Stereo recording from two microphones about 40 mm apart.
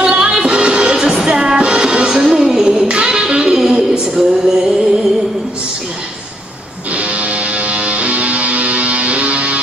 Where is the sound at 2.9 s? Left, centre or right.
Right.